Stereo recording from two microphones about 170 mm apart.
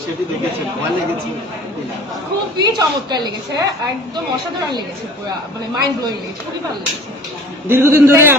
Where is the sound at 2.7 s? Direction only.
25° right (ahead or behind).